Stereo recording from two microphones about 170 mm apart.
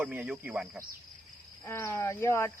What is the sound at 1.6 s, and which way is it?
Speech, 15° left (ahead or behind).